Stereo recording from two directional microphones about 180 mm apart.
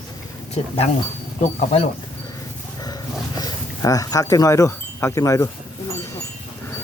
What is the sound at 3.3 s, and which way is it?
Speech, 20° left (ahead or behind).